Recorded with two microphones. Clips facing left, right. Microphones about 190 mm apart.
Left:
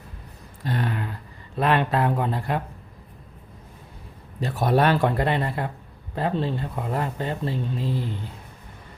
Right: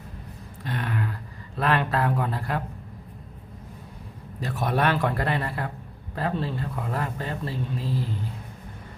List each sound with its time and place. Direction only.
0.6 s a sound: 35° left (ahead or behind)
1.5 s speech: 20° left (ahead or behind)
4.4 s speech: 30° left (ahead or behind)